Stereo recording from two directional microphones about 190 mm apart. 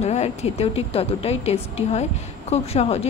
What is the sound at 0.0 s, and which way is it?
A woman's voice, 35° left (ahead or behind).